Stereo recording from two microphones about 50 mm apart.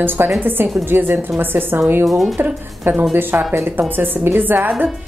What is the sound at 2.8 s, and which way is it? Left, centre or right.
A woman's voice, right.